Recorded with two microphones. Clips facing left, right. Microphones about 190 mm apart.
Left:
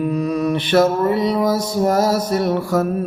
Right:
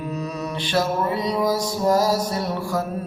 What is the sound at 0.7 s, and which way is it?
Music, 55° left (ahead or behind).